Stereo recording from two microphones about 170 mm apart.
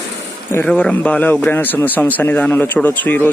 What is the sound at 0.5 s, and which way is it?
A man's voice, 10° left (ahead or behind).